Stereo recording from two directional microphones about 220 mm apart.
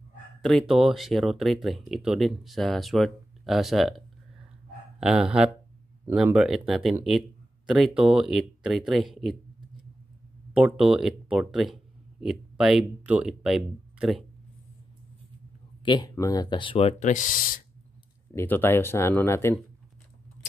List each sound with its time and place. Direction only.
0.4 s speech: centre (ahead or behind)
10.5 s speech: 5° right (ahead or behind)
15.8 s speech: 20° left (ahead or behind); by 17.6 s 40° left (ahead or behind)
18.3 s speech: 10° left (ahead or behind)